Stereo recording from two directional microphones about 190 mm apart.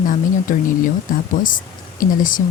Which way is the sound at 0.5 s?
45° left (ahead or behind).